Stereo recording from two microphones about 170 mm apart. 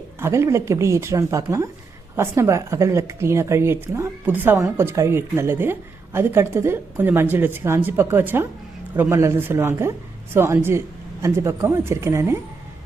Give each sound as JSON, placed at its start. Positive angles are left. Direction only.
{"t": 0.2, "sound": "speech", "side_deg": -15}